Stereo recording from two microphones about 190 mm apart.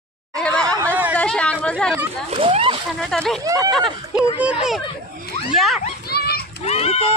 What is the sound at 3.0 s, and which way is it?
Speech, centre (ahead or behind).